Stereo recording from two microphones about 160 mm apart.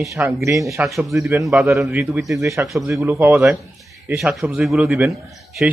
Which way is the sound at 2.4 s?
20° right (ahead or behind).